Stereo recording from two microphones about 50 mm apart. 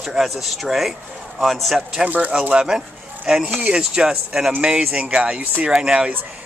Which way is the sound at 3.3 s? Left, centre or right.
Centre.